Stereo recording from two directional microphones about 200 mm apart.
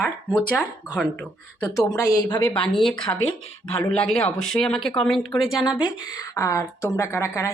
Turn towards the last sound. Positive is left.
turn(degrees=15)  # may be behind; listen again after turning